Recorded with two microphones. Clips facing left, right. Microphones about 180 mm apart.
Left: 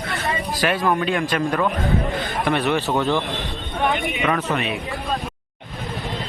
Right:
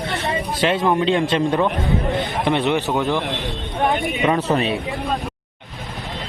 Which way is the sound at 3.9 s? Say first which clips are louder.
Right 2 dB; centre (ahead or behind).